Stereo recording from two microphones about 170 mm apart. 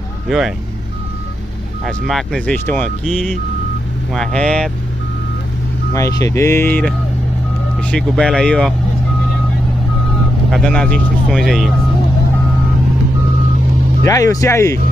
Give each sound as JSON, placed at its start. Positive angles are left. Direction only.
{"t": 1.9, "sound": "speech", "side_deg": 5}
{"t": 3.1, "sound": "speech", "side_deg": 0}
{"t": 5.9, "sound": "speech", "side_deg": 20}
{"t": 10.5, "sound": "speech", "side_deg": 5}
{"t": 14.0, "sound": "speech", "side_deg": 20}